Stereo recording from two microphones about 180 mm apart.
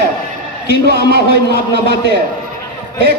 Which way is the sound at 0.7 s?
65° right (ahead or behind).